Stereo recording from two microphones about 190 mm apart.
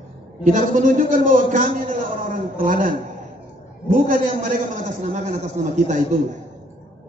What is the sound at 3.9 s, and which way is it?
A man's voice, 45° right (ahead or behind).